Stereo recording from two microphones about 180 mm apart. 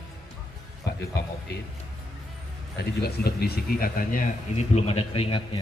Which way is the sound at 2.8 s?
60° left (ahead or behind).